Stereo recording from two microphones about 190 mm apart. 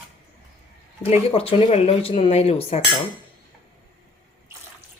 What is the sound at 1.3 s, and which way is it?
Speech, 30° left (ahead or behind).